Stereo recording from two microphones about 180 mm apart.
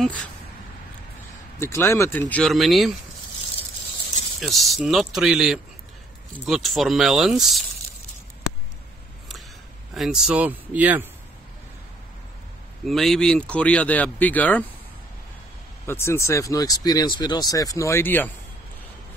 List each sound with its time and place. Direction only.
0.0 s speech: 5° left (ahead or behind)
1.6 s speech: 15° left (ahead or behind); by 3.0 s centre (ahead or behind)
4.4 s speech: centre (ahead or behind)
9.9 s speech: centre (ahead or behind)
12.8 s speech: centre (ahead or behind)
15.9 s speech: 15° left (ahead or behind)